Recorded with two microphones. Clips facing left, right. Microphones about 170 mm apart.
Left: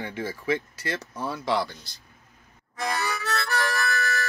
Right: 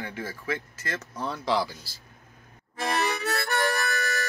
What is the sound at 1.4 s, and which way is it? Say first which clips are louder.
Speech: even; centre (ahead or behind).